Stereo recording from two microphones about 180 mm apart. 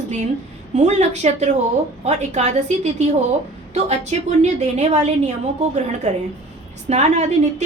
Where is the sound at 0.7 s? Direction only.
40° right (ahead or behind).